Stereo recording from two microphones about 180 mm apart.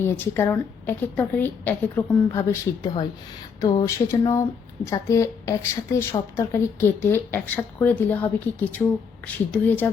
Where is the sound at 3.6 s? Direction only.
20° left (ahead or behind).